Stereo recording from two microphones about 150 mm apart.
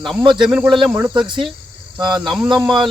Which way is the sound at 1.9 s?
30° right (ahead or behind).